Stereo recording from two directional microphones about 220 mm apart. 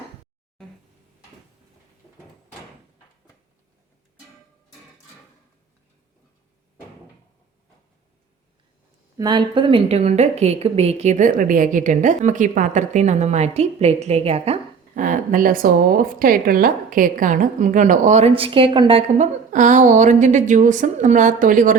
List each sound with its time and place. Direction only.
9.1 s a woman's voice: 20° right (ahead or behind); by 21.8 s 35° right (ahead or behind)